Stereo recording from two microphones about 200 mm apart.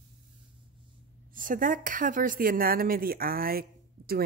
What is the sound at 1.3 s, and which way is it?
A woman's voice, 45° right (ahead or behind).